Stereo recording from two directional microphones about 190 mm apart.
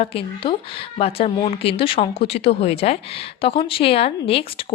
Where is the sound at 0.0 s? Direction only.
30° left (ahead or behind).